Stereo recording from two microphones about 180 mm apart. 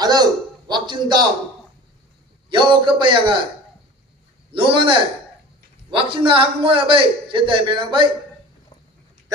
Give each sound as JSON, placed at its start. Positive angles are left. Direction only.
{"t": 0.0, "sound": "a man's voice", "side_deg": -20}
{"t": 2.5, "sound": "a man's voice", "side_deg": -25}
{"t": 4.5, "sound": "a man's voice", "side_deg": -30}